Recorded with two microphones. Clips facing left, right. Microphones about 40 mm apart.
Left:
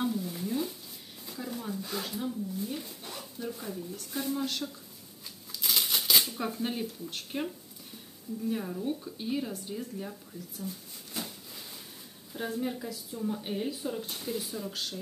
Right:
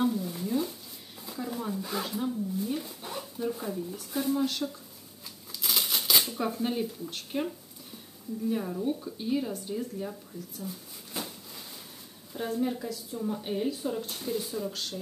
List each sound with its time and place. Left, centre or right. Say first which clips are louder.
0.0 s a sound: right 3 dB; centre
1.2 s speech: right 3 dB; centre
5.5 s shuffling cards: even; centre
8.5 s speech: right 3 dB; centre